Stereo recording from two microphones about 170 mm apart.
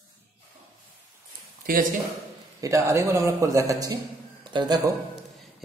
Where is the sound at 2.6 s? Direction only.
15° right (ahead or behind).